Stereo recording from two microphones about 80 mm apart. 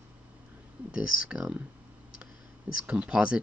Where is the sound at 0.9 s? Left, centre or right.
Centre.